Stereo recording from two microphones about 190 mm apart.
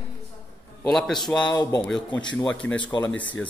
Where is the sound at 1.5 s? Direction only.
15° left (ahead or behind).